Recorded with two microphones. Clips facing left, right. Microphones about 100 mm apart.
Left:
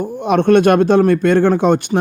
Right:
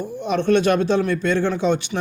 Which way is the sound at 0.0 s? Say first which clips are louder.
Left 7 dB; 55° left (ahead or behind).